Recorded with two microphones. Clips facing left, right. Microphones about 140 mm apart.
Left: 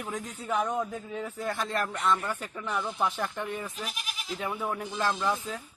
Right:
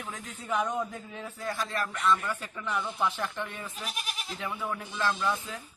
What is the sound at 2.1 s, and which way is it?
Speech, 15° left (ahead or behind).